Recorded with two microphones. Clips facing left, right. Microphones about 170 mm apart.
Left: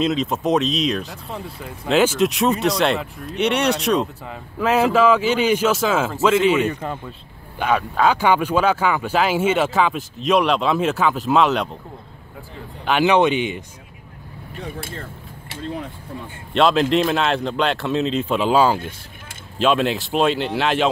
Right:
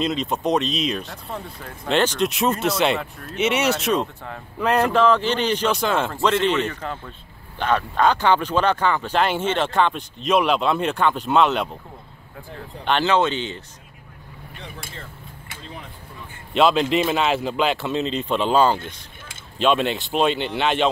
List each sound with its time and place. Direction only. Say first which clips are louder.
0.0 s speech: left 3 dB; centre (ahead or behind)
12.8 s speech: left 3 dB; 10° left (ahead or behind)
14.6 s speech: left 8 dB; 50° left (ahead or behind)
16.5 s speech: left 1 dB; centre (ahead or behind)